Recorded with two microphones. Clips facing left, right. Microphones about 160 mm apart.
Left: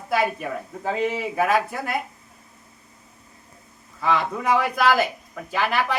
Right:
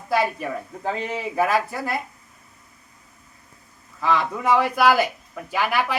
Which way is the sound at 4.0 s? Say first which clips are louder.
Even; centre (ahead or behind).